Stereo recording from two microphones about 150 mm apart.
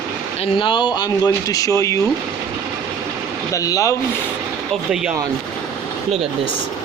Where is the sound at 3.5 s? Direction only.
20° left (ahead or behind).